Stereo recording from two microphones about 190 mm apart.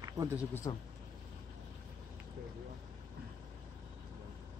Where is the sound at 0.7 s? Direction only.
25° left (ahead or behind).